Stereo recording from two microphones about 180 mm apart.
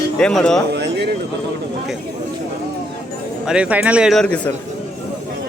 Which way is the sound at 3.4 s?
5° right (ahead or behind).